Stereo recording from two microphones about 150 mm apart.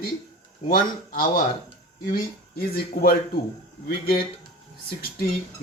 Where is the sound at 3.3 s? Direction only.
90° left.